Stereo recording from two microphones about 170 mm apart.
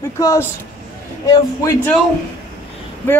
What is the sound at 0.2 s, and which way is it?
Music, 20° left (ahead or behind).